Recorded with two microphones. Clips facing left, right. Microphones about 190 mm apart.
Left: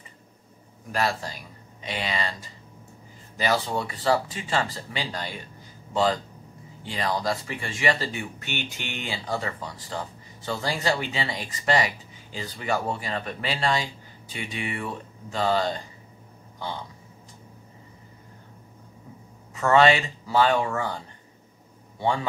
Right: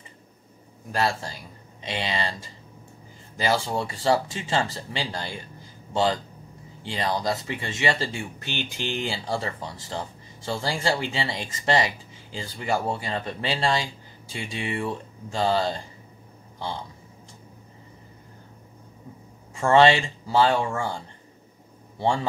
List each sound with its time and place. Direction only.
0.9 s speech: 25° right (ahead or behind)
6.9 s speech: 25° right (ahead or behind)
19.5 s speech: 25° right (ahead or behind)